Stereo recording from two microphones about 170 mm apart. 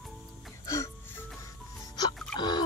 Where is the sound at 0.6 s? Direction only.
20° left (ahead or behind).